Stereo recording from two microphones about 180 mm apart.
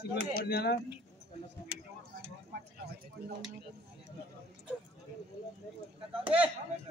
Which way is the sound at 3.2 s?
60° right (ahead or behind).